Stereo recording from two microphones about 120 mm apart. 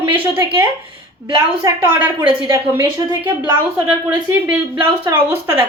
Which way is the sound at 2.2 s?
40° right (ahead or behind).